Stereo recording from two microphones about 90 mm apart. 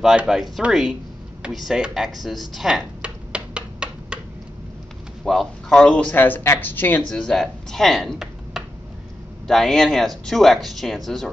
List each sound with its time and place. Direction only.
0.0 s speech: 10° right (ahead or behind)
2.5 s a sound: 5° right (ahead or behind)
5.2 s speech: 5° left (ahead or behind); by 7.1 s 20° left (ahead or behind)
7.1 s speech: 5° left (ahead or behind)